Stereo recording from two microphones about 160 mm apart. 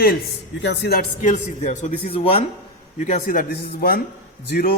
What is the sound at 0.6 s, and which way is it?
Speech, 90° left.